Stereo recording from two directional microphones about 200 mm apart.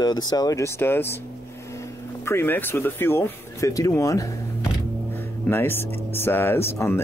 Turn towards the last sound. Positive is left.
turn(degrees=10)  # may be behind; listen again after turning